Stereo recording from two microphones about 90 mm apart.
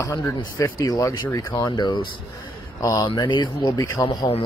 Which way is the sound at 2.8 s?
40° left (ahead or behind).